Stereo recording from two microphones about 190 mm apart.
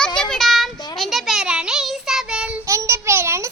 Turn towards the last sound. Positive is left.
turn(degrees=-15)  # may be behind; listen again after turning